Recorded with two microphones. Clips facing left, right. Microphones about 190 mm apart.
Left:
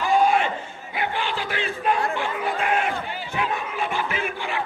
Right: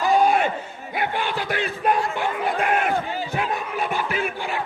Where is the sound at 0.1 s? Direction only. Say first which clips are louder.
Right 1 dB; 40° right (ahead or behind).